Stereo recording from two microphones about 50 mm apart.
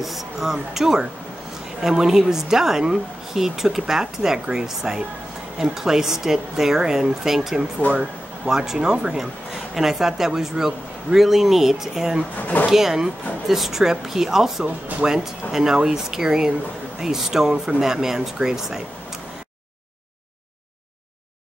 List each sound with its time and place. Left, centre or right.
0.0 s speech: centre
12.4 s speech: left
12.7 s speech: centre